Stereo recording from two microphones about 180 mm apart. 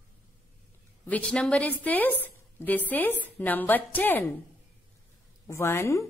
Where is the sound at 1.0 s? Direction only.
5° left (ahead or behind).